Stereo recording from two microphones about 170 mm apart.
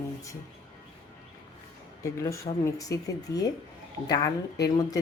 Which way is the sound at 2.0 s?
20° left (ahead or behind).